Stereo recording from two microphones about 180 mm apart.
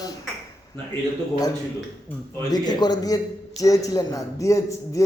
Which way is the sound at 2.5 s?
25° left (ahead or behind).